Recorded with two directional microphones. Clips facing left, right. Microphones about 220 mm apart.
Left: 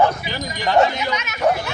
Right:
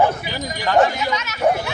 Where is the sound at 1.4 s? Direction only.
10° right (ahead or behind).